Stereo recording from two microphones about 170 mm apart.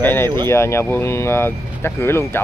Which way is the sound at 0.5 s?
15° left (ahead or behind).